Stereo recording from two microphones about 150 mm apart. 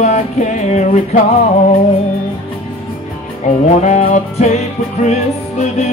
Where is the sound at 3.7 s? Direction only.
50° left (ahead or behind).